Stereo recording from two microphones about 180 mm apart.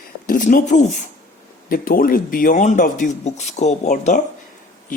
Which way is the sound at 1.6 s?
55° left (ahead or behind).